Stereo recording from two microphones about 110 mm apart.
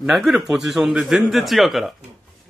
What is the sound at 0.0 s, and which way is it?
A man's voice, centre (ahead or behind).